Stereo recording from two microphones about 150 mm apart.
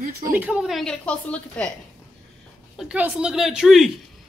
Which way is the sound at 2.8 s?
5° right (ahead or behind).